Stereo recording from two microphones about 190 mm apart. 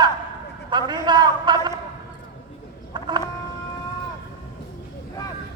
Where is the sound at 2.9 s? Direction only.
25° right (ahead or behind).